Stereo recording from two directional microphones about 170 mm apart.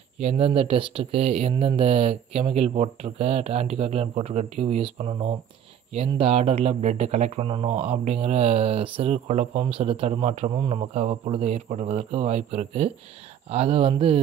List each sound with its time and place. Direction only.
0.2 s speech: 35° right (ahead or behind)